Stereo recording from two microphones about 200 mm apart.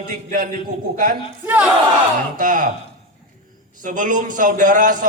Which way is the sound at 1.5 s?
5° right (ahead or behind).